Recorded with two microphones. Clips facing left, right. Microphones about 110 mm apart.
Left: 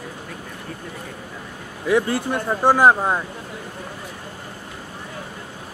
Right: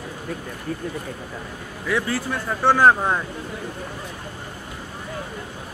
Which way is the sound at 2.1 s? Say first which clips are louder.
Left 3 dB; 20° left (ahead or behind).